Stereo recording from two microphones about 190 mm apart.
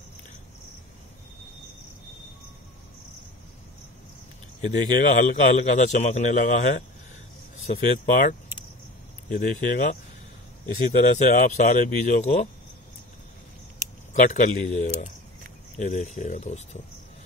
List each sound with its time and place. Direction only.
4.6 s a man's voice: 40° left (ahead or behind)
14.1 s a man's voice: 40° left (ahead or behind)